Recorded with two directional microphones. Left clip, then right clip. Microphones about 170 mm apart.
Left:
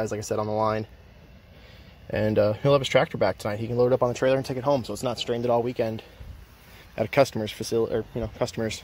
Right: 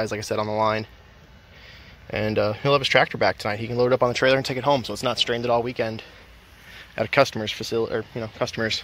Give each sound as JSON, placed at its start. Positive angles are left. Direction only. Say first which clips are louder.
{"t": 0.0, "sound": "speech", "louder": "right 2 dB", "side_deg": 10}
{"t": 2.0, "sound": "speech", "louder": "left 1 dB", "side_deg": 25}
{"t": 5.4, "sound": "speech", "louder": "right 1 dB", "side_deg": 20}
{"t": 8.5, "sound": "speech", "louder": "right 5 dB", "side_deg": 10}